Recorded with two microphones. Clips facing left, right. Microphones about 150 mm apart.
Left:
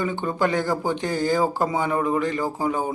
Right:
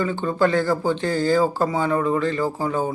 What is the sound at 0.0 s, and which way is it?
Speech, 15° left (ahead or behind).